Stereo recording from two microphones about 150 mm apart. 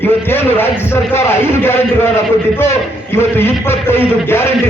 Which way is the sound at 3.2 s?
15° left (ahead or behind).